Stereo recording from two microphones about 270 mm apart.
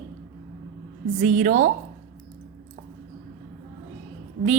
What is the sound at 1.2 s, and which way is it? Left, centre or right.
Speech, right.